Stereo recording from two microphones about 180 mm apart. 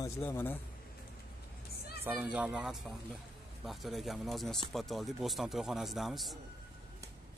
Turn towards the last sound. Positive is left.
turn(degrees=0)  # may be behind; listen again after turning